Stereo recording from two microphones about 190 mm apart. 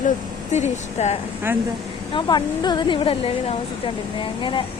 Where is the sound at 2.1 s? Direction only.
25° left (ahead or behind).